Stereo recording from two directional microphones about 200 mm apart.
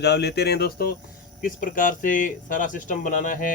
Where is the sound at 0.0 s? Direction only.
55° left (ahead or behind).